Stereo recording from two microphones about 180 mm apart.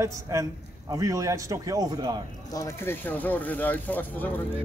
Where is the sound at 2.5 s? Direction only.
15° left (ahead or behind).